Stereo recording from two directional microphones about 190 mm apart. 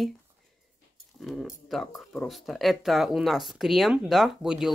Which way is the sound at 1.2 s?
Centre (ahead or behind).